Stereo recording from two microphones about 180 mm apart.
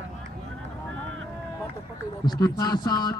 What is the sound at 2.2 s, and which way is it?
Speech, 20° left (ahead or behind).